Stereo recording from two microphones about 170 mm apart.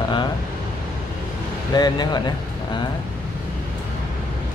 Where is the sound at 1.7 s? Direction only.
25° left (ahead or behind).